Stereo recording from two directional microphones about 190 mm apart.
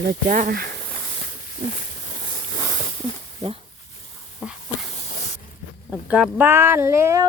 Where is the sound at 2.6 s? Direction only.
25° left (ahead or behind).